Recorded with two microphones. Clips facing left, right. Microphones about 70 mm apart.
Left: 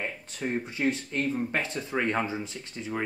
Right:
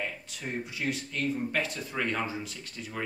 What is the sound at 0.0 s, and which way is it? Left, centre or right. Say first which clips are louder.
Speech: left 3 dB; left.